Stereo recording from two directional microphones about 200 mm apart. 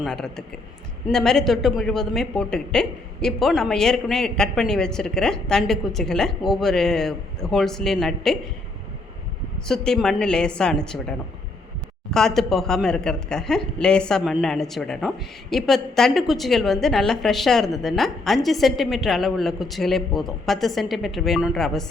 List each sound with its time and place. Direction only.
0.0 s a woman's voice: centre (ahead or behind)
9.6 s a woman's voice: 5° left (ahead or behind)
12.1 s a woman's voice: centre (ahead or behind)